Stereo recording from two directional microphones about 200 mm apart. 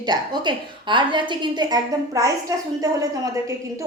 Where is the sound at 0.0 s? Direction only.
20° right (ahead or behind).